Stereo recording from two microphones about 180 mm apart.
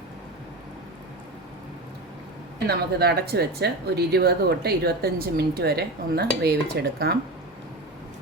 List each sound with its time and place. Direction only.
2.6 s speech: 65° right (ahead or behind)